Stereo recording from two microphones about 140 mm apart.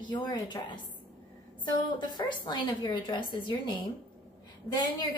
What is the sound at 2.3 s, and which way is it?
A woman's voice, 30° left (ahead or behind).